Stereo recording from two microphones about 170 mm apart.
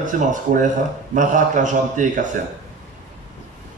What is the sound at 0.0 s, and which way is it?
A man's voice, 45° right (ahead or behind).